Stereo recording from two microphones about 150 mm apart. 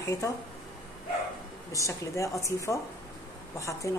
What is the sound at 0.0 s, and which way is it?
Speech, 20° left (ahead or behind).